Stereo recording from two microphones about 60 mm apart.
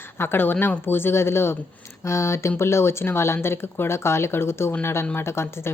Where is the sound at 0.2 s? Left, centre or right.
Left.